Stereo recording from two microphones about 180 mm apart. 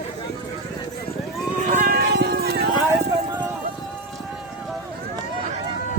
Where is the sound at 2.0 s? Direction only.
65° right (ahead or behind).